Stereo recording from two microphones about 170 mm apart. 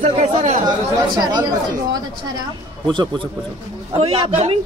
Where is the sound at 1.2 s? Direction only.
25° right (ahead or behind).